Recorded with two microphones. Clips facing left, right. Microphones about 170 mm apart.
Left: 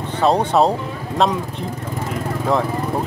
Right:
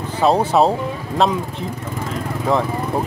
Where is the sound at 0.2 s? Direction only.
5° right (ahead or behind).